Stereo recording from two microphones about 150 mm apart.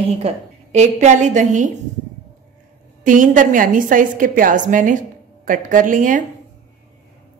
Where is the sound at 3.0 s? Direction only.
60° right (ahead or behind).